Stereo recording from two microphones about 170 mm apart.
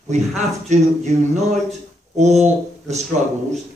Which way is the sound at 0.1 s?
40° right (ahead or behind).